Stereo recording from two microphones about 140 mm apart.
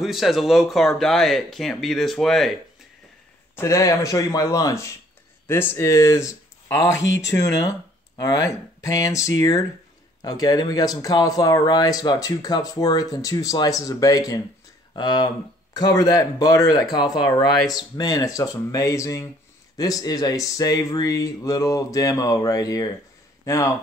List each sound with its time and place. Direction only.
0.0 s speech: centre (ahead or behind)
3.5 s speech: 20° left (ahead or behind)
7.3 s speech: 25° left (ahead or behind)